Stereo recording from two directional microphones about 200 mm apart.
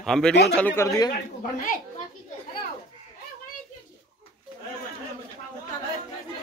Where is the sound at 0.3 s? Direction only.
55° left (ahead or behind).